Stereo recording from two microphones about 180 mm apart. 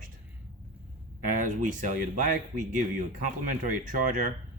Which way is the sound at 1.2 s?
45° right (ahead or behind).